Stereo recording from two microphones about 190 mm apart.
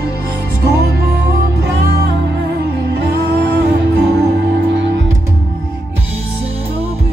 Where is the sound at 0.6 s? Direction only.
60° right (ahead or behind).